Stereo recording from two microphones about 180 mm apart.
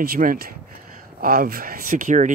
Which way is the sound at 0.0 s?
55° right (ahead or behind).